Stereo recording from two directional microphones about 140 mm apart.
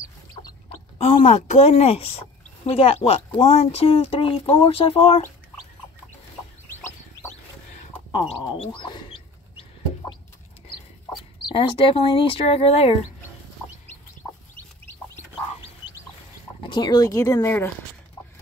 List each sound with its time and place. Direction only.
0.7 s a sound: 45° left (ahead or behind)
1.2 s speech: 55° left (ahead or behind)
6.7 s chicken: 20° left (ahead or behind)
8.1 s chicken: 35° left (ahead or behind)
11.4 s speech: 40° left (ahead or behind)
16.6 s speech: 30° left (ahead or behind); by 17.7 s 15° left (ahead or behind)